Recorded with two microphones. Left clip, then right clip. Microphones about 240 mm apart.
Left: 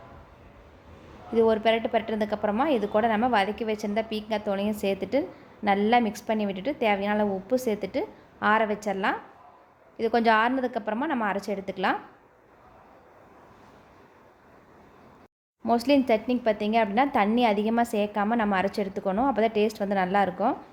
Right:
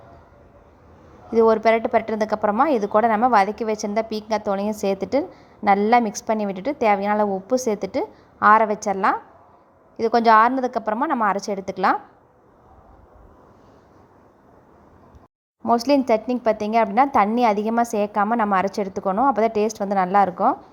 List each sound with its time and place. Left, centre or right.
1.3 s a woman's voice: right
15.6 s speech: centre